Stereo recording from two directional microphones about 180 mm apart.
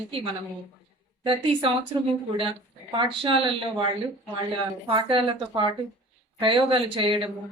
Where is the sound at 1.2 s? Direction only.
30° right (ahead or behind).